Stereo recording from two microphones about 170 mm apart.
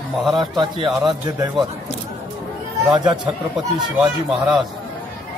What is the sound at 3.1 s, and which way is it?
Speech, 5° right (ahead or behind).